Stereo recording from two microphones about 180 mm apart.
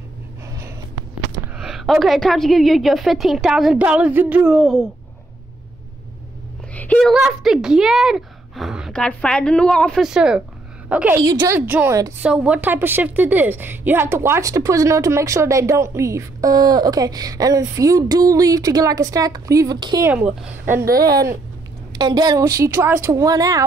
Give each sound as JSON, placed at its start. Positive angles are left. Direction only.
{"t": 1.4, "sound": "a woman's voice", "side_deg": 0}
{"t": 6.7, "sound": "a woman's voice", "side_deg": 10}
{"t": 11.1, "sound": "a woman's voice", "side_deg": -20}
{"t": 20.1, "sound": "a woman's voice", "side_deg": -5}
{"t": 20.8, "sound": "speech", "side_deg": -55}
{"t": 21.9, "sound": "a woman's voice", "side_deg": -20}